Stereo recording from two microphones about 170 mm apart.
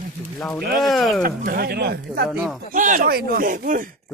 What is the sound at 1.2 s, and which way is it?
Speech, 65° right (ahead or behind).